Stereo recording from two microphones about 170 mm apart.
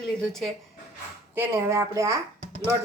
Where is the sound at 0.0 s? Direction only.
Centre (ahead or behind).